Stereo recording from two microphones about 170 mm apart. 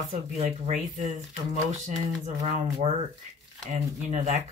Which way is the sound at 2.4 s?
35° right (ahead or behind).